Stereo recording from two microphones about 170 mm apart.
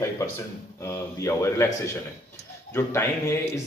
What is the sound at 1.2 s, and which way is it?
A man's voice, 15° left (ahead or behind).